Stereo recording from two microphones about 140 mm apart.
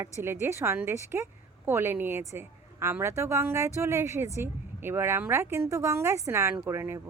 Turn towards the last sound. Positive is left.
turn(degrees=-15)  # may be behind; listen again after turning